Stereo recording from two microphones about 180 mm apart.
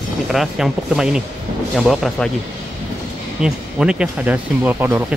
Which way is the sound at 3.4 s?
5° right (ahead or behind).